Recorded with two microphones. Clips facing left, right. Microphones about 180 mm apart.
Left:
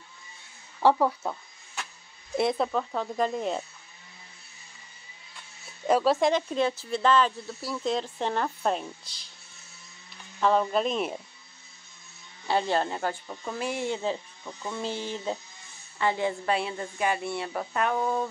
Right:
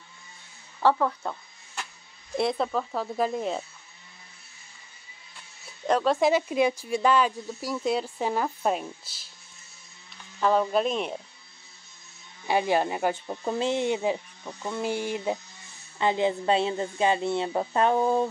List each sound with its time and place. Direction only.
0.7 s a sound: 10° left (ahead or behind)
2.3 s speech: centre (ahead or behind)
5.9 s speech: 5° left (ahead or behind)
10.4 s speech: centre (ahead or behind)
12.4 s a woman's voice: 15° right (ahead or behind); by 18.3 s 30° right (ahead or behind)